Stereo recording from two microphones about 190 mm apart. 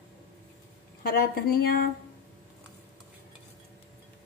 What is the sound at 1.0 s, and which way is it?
Speech, 50° left (ahead or behind).